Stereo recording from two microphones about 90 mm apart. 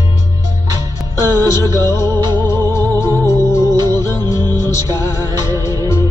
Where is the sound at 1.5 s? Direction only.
35° left (ahead or behind).